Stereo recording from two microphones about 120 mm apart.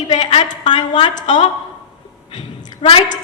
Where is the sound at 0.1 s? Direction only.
75° left (ahead or behind).